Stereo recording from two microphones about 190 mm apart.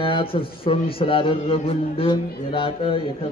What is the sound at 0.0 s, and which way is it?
A man's voice, 30° left (ahead or behind).